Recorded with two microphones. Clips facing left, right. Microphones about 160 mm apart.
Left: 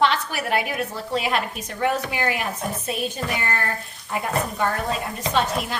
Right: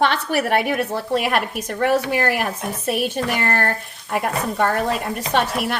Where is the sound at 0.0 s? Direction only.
60° right (ahead or behind).